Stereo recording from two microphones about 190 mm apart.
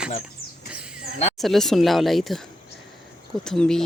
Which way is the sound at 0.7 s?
5° right (ahead or behind).